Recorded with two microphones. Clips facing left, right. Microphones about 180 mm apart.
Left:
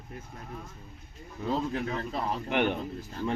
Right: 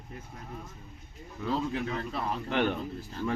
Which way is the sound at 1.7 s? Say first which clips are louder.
Left 1 dB; 40° left (ahead or behind).